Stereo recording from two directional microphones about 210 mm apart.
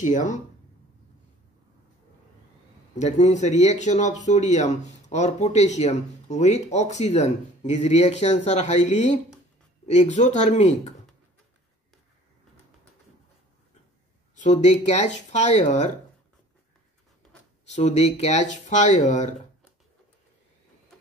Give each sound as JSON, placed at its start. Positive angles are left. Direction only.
{"t": 0.0, "sound": "speech", "side_deg": 35}
{"t": 3.0, "sound": "speech", "side_deg": 35}
{"t": 14.4, "sound": "speech", "side_deg": 30}
{"t": 17.6, "sound": "speech", "side_deg": 30}